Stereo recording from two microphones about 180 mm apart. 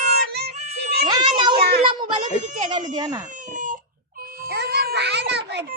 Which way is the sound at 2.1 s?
40° right (ahead or behind).